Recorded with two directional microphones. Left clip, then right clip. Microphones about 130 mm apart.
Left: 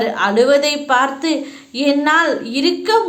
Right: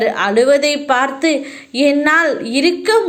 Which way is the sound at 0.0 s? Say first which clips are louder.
Right 1 dB; 30° right (ahead or behind).